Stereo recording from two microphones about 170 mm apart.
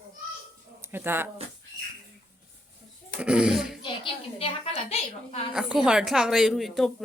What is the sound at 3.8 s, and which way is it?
A woman's voice, 30° left (ahead or behind).